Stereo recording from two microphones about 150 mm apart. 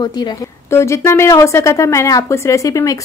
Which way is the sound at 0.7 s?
15° left (ahead or behind).